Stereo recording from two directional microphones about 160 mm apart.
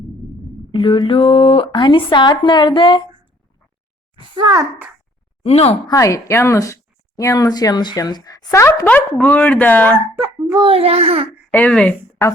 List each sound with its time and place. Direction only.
0.7 s a woman's voice: 35° left (ahead or behind)
5.5 s a woman's voice: 40° left (ahead or behind)
5.9 s speech: 20° left (ahead or behind)
10.2 s a child's voice: 20° right (ahead or behind)
10.7 s a child's voice: 40° right (ahead or behind)
11.5 s a woman's voice: 10° left (ahead or behind)